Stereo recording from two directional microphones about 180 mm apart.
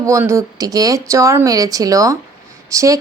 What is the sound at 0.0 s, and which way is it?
Speech, 15° right (ahead or behind).